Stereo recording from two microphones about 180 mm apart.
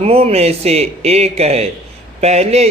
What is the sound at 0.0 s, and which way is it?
Speech, 35° right (ahead or behind).